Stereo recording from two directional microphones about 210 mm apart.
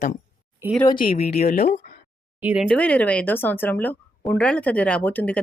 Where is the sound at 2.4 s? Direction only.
5° right (ahead or behind).